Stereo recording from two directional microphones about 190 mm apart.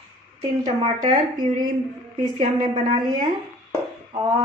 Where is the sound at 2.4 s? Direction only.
40° right (ahead or behind).